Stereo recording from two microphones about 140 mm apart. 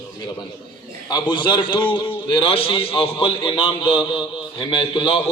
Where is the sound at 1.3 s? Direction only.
35° left (ahead or behind).